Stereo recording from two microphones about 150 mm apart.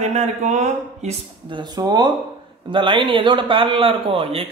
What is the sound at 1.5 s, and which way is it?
A man's voice, 30° right (ahead or behind).